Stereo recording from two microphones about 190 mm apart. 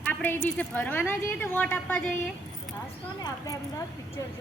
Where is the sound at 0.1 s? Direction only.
10° left (ahead or behind).